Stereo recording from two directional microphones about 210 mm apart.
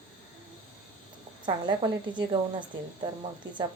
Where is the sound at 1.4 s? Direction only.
20° right (ahead or behind).